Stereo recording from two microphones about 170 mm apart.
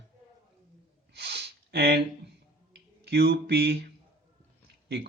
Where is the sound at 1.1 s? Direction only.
75° right (ahead or behind).